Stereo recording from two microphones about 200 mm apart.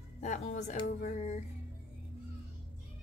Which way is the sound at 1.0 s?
35° left (ahead or behind).